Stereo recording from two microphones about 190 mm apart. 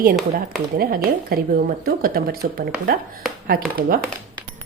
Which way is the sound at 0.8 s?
50° right (ahead or behind).